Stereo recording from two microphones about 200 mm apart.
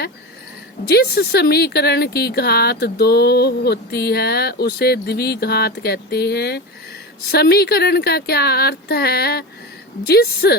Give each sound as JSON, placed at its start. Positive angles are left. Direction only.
{"t": 0.9, "sound": "speech", "side_deg": 50}